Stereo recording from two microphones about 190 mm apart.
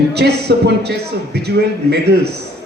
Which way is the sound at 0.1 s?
60° right (ahead or behind).